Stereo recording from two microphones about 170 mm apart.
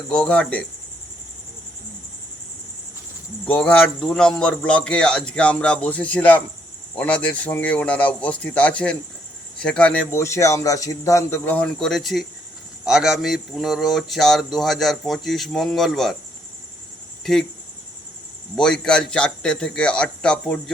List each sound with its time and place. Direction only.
0.1 s speech: 5° left (ahead or behind)
3.4 s speech: 5° left (ahead or behind)
18.5 s speech: 5° left (ahead or behind)